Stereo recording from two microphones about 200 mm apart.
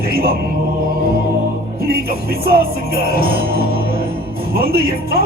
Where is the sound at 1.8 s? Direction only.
50° right (ahead or behind).